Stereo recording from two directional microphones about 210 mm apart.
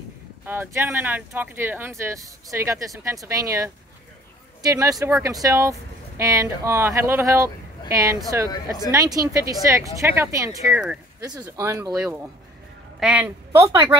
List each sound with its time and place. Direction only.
0.5 s speech: 10° right (ahead or behind)
8.5 s speech: 20° left (ahead or behind)
8.9 s speech: 15° right (ahead or behind)
11.3 s speech: 15° right (ahead or behind)